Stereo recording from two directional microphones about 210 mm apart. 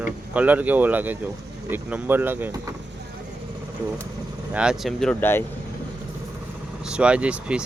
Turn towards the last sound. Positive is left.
turn(degrees=-5)  # may be behind; listen again after turning